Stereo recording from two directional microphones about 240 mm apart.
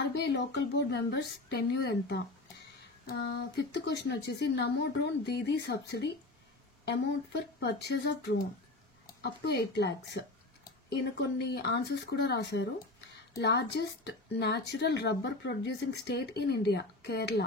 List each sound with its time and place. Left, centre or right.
0.1 s speech: left